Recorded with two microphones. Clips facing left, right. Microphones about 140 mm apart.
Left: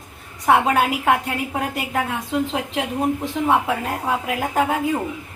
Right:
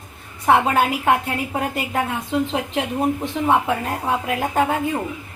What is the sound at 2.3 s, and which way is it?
Speech, centre (ahead or behind).